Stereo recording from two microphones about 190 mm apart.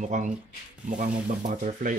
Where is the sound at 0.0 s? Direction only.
40° right (ahead or behind).